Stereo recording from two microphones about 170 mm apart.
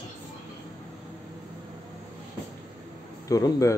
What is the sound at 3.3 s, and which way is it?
Speech, 20° left (ahead or behind).